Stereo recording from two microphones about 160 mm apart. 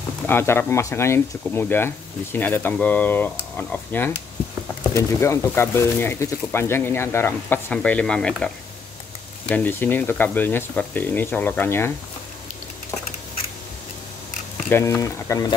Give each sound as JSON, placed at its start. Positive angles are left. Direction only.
{"t": 0.3, "sound": "speech", "side_deg": 15}
{"t": 9.5, "sound": "speech", "side_deg": 10}
{"t": 14.7, "sound": "speech", "side_deg": 15}